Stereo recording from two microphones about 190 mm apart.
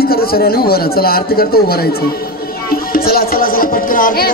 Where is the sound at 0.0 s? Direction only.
55° left (ahead or behind).